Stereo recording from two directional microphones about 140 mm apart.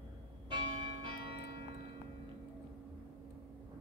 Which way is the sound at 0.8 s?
35° right (ahead or behind).